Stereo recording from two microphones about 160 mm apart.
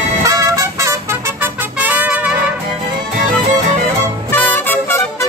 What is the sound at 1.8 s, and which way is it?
Trumpet, 10° right (ahead or behind).